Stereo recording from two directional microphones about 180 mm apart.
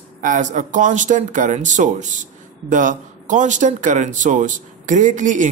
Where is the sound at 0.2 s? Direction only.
45° right (ahead or behind).